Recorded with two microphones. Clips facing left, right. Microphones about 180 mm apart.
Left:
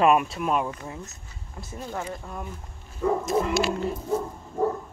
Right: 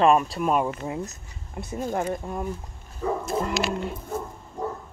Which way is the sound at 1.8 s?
45° right (ahead or behind).